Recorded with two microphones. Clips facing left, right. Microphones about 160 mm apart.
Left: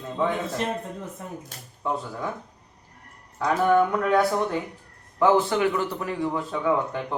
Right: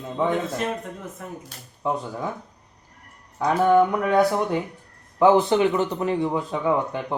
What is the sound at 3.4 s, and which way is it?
A man's voice, 15° right (ahead or behind).